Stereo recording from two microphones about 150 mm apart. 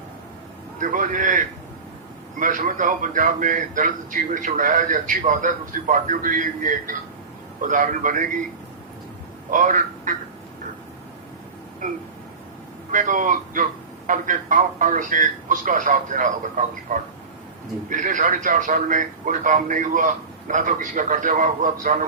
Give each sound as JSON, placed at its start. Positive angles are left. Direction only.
{"t": 0.8, "sound": "a man's voice", "side_deg": -60}
{"t": 9.5, "sound": "speech", "side_deg": -60}
{"t": 12.9, "sound": "a man's voice", "side_deg": -60}